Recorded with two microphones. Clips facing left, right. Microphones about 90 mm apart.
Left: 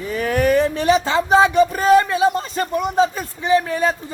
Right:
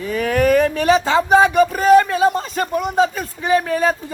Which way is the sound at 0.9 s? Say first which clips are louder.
Right 2 dB; 40° right (ahead or behind).